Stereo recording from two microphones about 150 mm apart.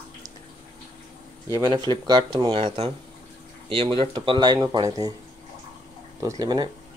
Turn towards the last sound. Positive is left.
turn(degrees=-25)  # may be behind; listen again after turning